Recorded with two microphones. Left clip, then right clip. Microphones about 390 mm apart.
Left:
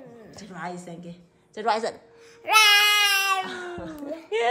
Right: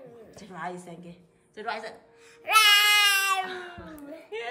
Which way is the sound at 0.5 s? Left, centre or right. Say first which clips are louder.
Left 1 dB; centre.